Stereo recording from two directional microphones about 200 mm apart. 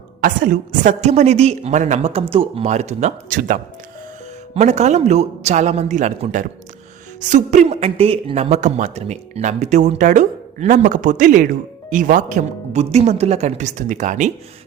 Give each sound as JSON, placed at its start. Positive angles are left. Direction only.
{"t": 0.2, "sound": "speech", "side_deg": -45}